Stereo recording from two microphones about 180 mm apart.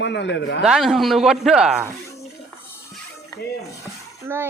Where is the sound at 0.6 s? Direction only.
5° right (ahead or behind).